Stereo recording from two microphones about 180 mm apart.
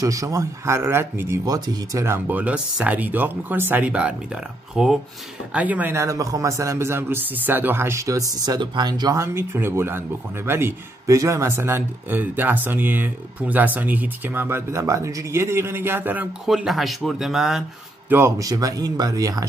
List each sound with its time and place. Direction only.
0.0 s a man's voice: 20° right (ahead or behind); by 17.6 s centre (ahead or behind)
18.1 s speech: 15° right (ahead or behind)